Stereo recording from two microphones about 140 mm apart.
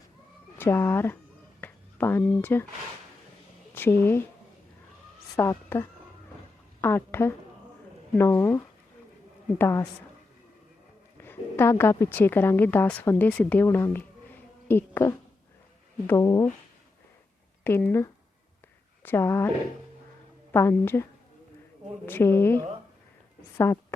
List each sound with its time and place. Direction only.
0.6 s a woman's voice: 20° left (ahead or behind)
3.8 s speech: 15° left (ahead or behind)
5.6 s a woman's voice: 15° left (ahead or behind)
11.2 s a woman's voice: 15° left (ahead or behind)
17.6 s a woman's voice: 15° left (ahead or behind)
20.5 s a woman's voice: 15° left (ahead or behind)